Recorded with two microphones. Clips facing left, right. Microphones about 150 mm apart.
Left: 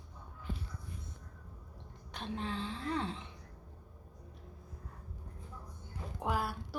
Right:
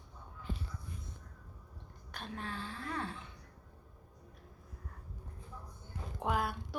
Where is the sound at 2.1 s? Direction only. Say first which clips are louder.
Left 4 dB; 20° left (ahead or behind).